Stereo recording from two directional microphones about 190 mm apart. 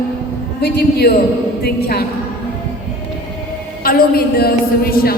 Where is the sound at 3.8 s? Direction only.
50° left (ahead or behind).